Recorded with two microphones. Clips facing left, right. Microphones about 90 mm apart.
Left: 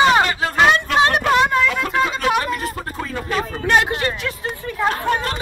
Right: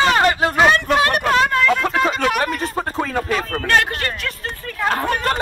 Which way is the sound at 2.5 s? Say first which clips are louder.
Right 4 dB; 30° right (ahead or behind).